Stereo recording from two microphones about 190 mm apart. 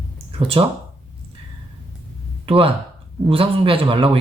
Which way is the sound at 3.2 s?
30° right (ahead or behind).